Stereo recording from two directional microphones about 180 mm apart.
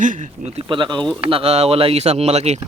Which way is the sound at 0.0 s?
45° right (ahead or behind).